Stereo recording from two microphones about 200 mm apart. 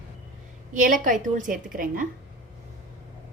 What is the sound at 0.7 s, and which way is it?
A woman's voice, 40° right (ahead or behind).